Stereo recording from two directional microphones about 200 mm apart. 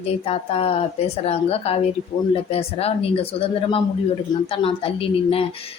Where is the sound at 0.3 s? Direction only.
30° left (ahead or behind).